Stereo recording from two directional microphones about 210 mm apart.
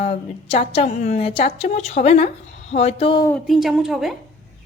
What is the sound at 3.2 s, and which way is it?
Speech, centre (ahead or behind).